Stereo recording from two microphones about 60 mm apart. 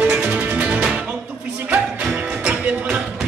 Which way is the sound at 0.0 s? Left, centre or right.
Centre.